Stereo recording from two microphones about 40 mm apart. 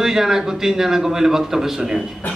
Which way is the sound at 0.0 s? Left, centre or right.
Centre.